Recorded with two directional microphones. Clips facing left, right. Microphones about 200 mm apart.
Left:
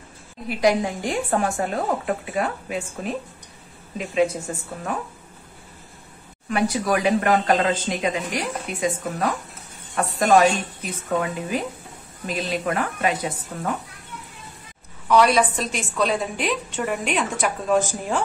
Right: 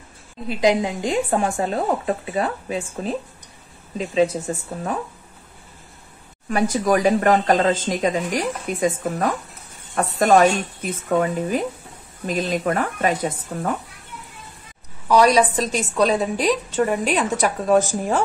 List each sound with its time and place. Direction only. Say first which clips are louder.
0.5 s a woman's voice: right 1 dB; 20° right (ahead or behind)
6.5 s speech: right 3 dB; 45° right (ahead or behind)
15.0 s a woman's voice: right 2 dB; 40° right (ahead or behind)